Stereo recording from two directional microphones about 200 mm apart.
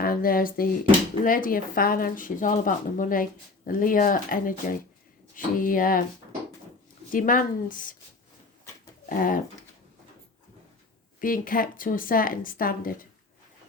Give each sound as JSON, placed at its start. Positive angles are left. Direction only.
{"t": 0.0, "sound": "a sound", "side_deg": 45}
{"t": 1.2, "sound": "speech", "side_deg": 45}
{"t": 7.1, "sound": "speech", "side_deg": 45}
{"t": 9.0, "sound": "speech", "side_deg": 45}
{"t": 11.2, "sound": "speech", "side_deg": 45}